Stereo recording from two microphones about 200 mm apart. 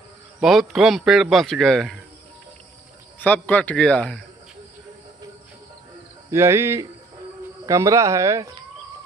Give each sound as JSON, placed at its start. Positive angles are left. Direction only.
{"t": 0.4, "sound": "a man's voice", "side_deg": 0}
{"t": 3.2, "sound": "speech", "side_deg": 5}
{"t": 6.3, "sound": "speech", "side_deg": -10}